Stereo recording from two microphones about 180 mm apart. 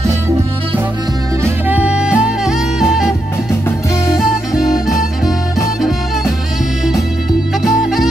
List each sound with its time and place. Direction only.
1.4 s music: 10° right (ahead or behind)